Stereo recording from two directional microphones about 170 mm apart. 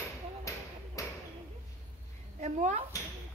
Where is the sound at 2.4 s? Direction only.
45° right (ahead or behind).